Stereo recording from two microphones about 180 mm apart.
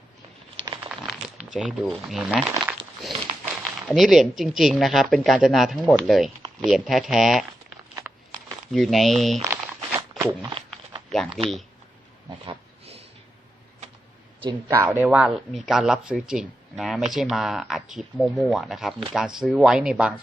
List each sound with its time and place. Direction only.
0.9 s crumpling: 5° right (ahead or behind)
3.4 s speech: centre (ahead or behind)
8.7 s speech: centre (ahead or behind)
9.4 s a sound: 15° right (ahead or behind)
11.1 s speech: centre (ahead or behind)
12.5 s a sound: 35° right (ahead or behind)
15.0 s speech: 5° right (ahead or behind)